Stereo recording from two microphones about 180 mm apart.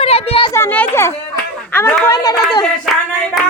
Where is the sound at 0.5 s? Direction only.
10° left (ahead or behind).